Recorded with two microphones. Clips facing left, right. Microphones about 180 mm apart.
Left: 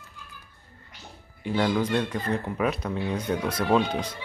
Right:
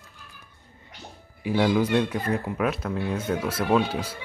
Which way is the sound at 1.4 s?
5° right (ahead or behind).